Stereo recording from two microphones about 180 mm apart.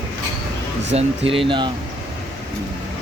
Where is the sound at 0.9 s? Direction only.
30° right (ahead or behind).